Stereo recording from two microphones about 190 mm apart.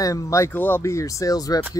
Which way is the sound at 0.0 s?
15° left (ahead or behind).